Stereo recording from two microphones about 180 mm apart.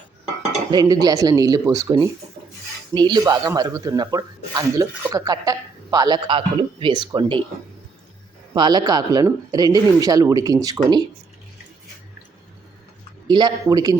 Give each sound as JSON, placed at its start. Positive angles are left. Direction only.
{"t": 0.7, "sound": "speech", "side_deg": -20}
{"t": 8.5, "sound": "speech", "side_deg": -25}
{"t": 13.2, "sound": "speech", "side_deg": -25}